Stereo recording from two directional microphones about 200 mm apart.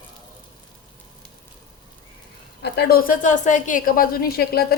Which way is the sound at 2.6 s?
50° left (ahead or behind).